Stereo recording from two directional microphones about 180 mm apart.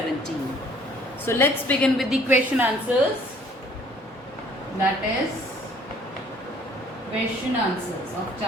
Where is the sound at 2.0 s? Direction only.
5° right (ahead or behind).